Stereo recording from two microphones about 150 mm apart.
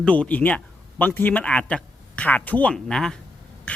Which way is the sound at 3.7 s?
10° left (ahead or behind).